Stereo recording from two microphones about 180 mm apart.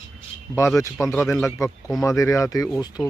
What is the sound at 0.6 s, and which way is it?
Speech, 15° left (ahead or behind).